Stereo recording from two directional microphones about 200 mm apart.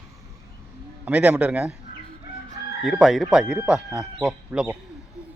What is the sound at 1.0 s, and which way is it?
Speech, 5° right (ahead or behind).